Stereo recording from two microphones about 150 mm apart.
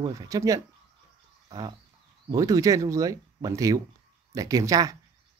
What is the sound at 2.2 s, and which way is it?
Speech, 25° right (ahead or behind).